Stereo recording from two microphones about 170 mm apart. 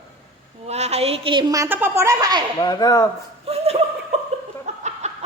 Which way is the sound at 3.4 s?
35° right (ahead or behind).